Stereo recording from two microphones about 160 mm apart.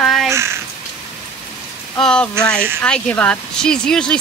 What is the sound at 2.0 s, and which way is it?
Speech, 5° left (ahead or behind).